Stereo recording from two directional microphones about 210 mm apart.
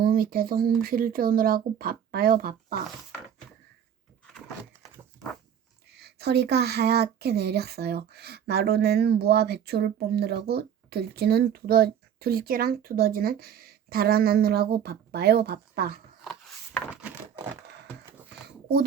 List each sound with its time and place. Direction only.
0.0 s speech: 45° right (ahead or behind)
6.0 s speech: 50° right (ahead or behind)
16.2 s a sound: 5° left (ahead or behind)